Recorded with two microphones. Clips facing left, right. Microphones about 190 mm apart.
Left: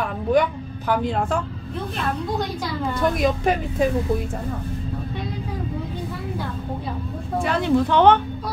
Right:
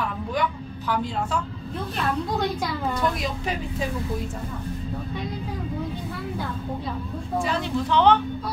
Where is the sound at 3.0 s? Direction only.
50° left (ahead or behind).